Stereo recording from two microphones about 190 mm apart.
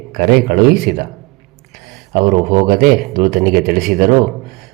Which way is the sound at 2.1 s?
45° right (ahead or behind).